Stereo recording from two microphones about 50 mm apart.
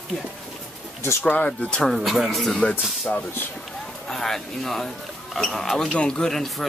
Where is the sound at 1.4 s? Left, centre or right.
Centre.